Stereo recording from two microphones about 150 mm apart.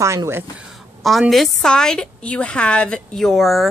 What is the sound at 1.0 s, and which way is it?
Speech, centre (ahead or behind).